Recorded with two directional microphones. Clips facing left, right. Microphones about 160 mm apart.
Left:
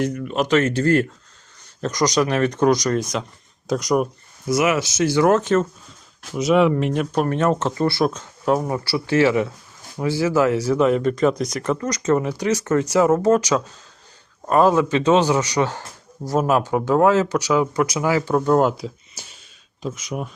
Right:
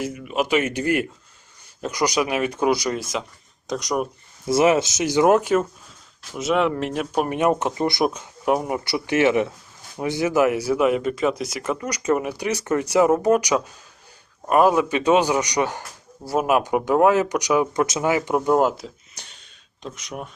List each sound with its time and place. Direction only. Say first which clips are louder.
0.0 s speech: left 3 dB; 5° right (ahead or behind)
4.4 s speech: right 2 dB; 30° right (ahead or behind)
4.9 s speech: even; 15° right (ahead or behind)
6.3 s speech: left 4 dB; centre (ahead or behind)